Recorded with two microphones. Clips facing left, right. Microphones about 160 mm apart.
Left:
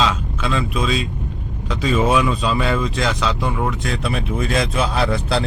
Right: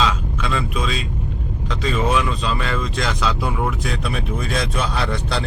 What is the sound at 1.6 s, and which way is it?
Speech, 5° left (ahead or behind).